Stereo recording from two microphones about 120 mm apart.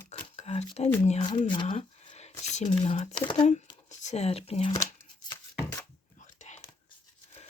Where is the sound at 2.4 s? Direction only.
70° left (ahead or behind).